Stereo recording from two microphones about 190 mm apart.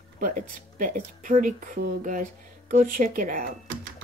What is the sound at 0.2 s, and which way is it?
Speech, 45° right (ahead or behind).